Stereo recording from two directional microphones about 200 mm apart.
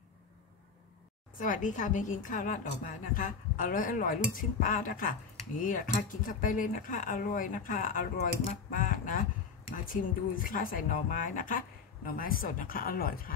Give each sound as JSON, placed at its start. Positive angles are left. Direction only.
{"t": 1.4, "sound": "a woman's voice", "side_deg": 40}